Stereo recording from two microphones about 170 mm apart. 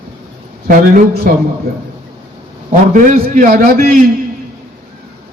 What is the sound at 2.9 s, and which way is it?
A man's voice, 50° right (ahead or behind).